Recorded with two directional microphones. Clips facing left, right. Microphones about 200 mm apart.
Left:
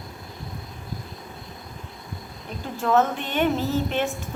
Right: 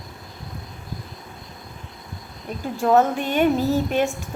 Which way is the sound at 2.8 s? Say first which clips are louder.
Right 3 dB; 40° right (ahead or behind).